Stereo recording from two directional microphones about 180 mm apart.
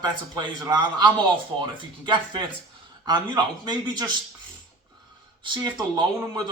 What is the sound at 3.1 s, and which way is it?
Speech, 25° right (ahead or behind).